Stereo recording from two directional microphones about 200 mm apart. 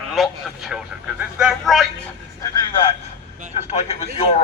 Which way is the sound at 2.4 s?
25° left (ahead or behind).